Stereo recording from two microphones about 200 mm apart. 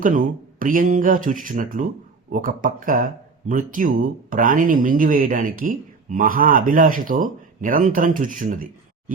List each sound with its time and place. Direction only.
0.0 s speech: 45° right (ahead or behind)